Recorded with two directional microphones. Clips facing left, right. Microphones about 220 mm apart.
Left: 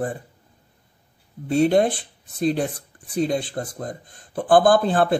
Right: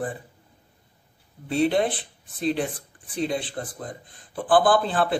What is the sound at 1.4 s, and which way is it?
Speech, 45° left (ahead or behind).